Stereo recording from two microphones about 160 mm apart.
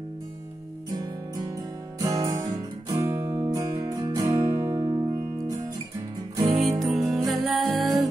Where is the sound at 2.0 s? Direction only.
20° right (ahead or behind).